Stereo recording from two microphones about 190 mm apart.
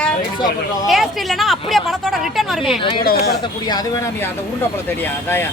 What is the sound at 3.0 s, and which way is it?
Speech, 55° left (ahead or behind).